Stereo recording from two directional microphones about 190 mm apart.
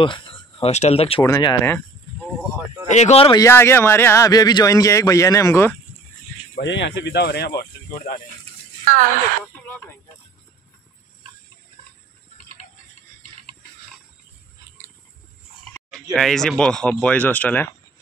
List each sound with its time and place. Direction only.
0.0 s speech: 30° left (ahead or behind)
1.2 s a man's voice: 20° left (ahead or behind)
2.9 s speech: 35° left (ahead or behind)
3.4 s a man's voice: 15° left (ahead or behind)
6.6 s speech: 70° left (ahead or behind)
8.8 s speech: 45° right (ahead or behind)
9.7 s a sound: 10° left (ahead or behind)
15.9 s a man's voice: centre (ahead or behind)